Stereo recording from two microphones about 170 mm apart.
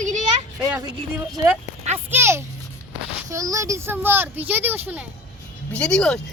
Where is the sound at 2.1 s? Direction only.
15° right (ahead or behind).